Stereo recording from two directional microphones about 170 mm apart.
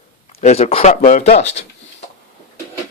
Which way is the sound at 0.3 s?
40° left (ahead or behind).